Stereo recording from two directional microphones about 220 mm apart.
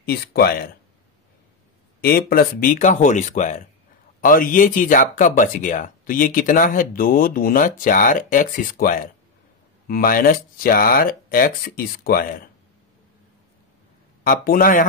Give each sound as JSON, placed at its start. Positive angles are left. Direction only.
{"t": 0.0, "sound": "speech", "side_deg": 45}
{"t": 2.0, "sound": "speech", "side_deg": 40}
{"t": 14.2, "sound": "speech", "side_deg": 40}